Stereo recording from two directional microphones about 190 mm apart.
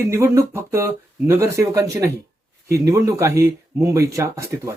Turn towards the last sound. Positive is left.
turn(degrees=-15)  # may be behind; listen again after turning